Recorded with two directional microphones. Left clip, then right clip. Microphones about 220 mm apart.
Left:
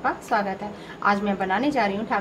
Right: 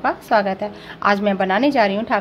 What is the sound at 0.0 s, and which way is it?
A woman's voice, 45° right (ahead or behind).